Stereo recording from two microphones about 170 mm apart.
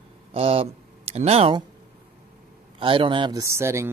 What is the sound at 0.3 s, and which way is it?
Speech, 35° right (ahead or behind).